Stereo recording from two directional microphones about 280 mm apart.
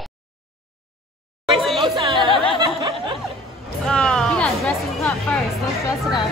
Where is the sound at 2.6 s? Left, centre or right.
Centre.